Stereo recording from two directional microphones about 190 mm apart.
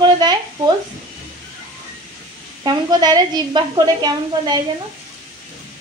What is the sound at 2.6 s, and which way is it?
A woman's voice, 20° right (ahead or behind).